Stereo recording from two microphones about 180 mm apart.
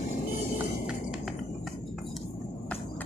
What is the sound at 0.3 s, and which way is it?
Music, 50° left (ahead or behind).